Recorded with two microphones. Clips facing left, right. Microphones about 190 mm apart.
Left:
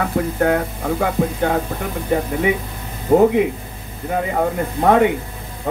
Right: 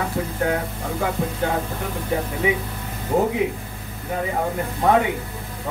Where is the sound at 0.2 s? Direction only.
60° left (ahead or behind).